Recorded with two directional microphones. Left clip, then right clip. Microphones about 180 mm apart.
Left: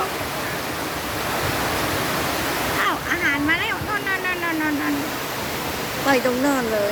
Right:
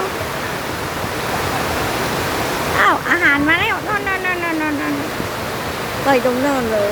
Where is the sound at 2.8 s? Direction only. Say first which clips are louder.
Right 10 dB; 30° right (ahead or behind).